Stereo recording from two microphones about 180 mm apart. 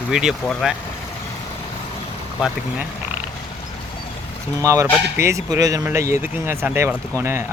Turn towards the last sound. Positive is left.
turn(degrees=-15)  # may be behind; listen again after turning